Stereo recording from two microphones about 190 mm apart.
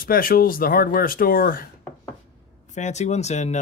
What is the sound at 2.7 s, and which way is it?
Speech, 40° left (ahead or behind).